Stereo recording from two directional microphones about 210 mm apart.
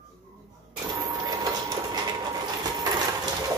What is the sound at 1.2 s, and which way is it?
Train, 20° right (ahead or behind).